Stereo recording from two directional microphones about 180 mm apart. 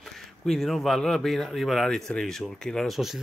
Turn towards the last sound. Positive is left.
turn(degrees=0)  # may be behind; listen again after turning